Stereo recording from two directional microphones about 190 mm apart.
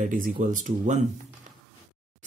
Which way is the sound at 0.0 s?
45° right (ahead or behind).